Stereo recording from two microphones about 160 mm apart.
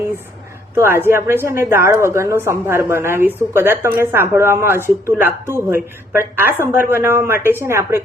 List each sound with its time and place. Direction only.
0.8 s a woman's voice: 15° right (ahead or behind)